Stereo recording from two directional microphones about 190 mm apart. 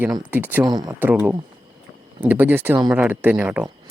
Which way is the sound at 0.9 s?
10° right (ahead or behind).